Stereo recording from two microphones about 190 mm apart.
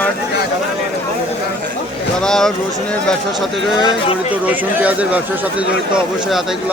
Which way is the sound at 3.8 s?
25° left (ahead or behind).